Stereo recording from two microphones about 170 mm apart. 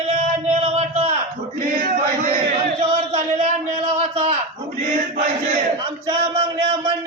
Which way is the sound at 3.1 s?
35° right (ahead or behind).